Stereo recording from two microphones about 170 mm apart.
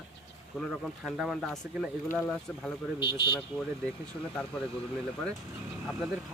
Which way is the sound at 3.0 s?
30° left (ahead or behind).